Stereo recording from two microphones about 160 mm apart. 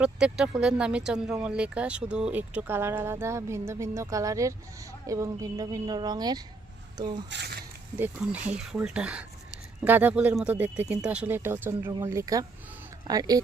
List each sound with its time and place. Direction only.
0.0 s speech: 5° right (ahead or behind); by 7.3 s 25° right (ahead or behind)
7.3 s speech: 85° right
7.9 s speech: 10° right (ahead or behind)